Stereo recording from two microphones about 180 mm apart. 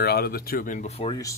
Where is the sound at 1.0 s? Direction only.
25° left (ahead or behind).